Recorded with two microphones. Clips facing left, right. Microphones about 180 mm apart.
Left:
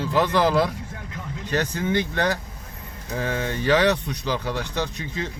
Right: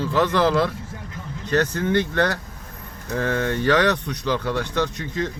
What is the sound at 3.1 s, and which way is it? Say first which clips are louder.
Speech: right 3 dB; 10° left (ahead or behind).